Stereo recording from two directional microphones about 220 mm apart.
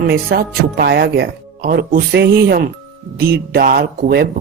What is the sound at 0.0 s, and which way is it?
Speech, 45° right (ahead or behind).